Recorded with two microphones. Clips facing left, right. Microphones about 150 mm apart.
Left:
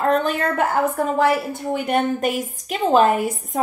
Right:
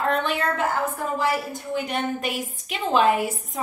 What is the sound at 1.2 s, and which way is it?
Child singing, 60° left (ahead or behind).